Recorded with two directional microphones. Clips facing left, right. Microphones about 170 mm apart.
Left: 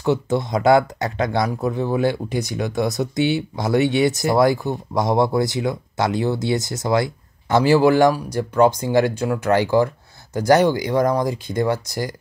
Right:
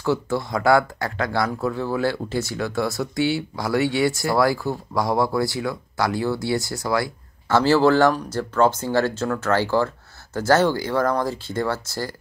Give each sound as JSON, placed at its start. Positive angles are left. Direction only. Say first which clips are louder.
{"t": 0.0, "sound": "speech", "louder": "left 3 dB", "side_deg": 20}